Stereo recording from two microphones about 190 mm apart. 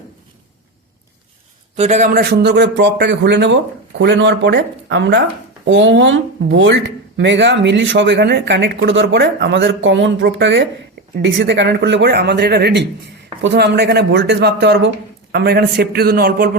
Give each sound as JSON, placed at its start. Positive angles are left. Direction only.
{"t": 1.7, "sound": "a man's voice", "side_deg": -35}
{"t": 2.4, "sound": "speech", "side_deg": -65}